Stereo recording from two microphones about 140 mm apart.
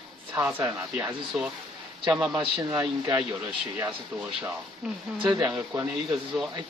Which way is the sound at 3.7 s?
15° right (ahead or behind).